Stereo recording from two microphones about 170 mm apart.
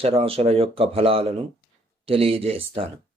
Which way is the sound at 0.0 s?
35° right (ahead or behind).